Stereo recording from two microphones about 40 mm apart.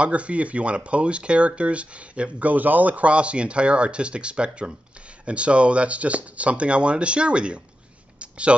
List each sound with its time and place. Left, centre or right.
0.0 s speech: right
2.4 s speech: right
8.2 s a sound: right